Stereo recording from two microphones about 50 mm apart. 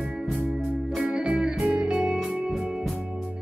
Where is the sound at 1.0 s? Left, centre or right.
Centre.